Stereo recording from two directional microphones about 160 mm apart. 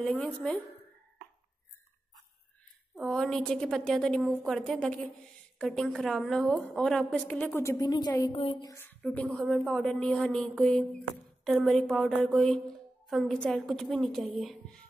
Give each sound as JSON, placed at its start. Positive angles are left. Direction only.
{"t": 0.0, "sound": "a woman's voice", "side_deg": 5}
{"t": 3.1, "sound": "a woman's voice", "side_deg": 5}
{"t": 8.6, "sound": "a woman's voice", "side_deg": 15}